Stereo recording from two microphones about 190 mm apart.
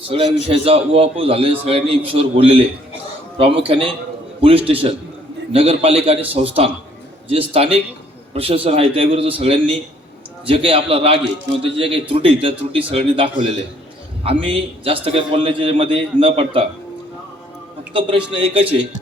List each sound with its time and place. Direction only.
0.1 s a man's voice: 30° right (ahead or behind)
18.3 s a man's voice: 30° right (ahead or behind)